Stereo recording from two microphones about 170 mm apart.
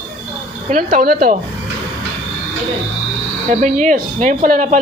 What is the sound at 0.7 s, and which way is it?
Speech, 55° right (ahead or behind).